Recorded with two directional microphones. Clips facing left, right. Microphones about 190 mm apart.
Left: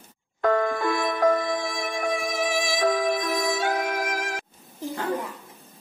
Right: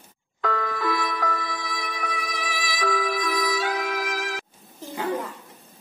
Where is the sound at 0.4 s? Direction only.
50° left (ahead or behind).